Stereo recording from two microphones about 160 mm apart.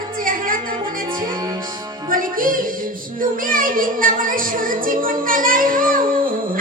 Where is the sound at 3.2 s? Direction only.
60° right (ahead or behind).